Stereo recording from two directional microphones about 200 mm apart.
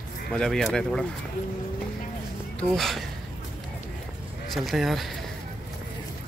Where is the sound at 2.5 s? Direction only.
Centre (ahead or behind).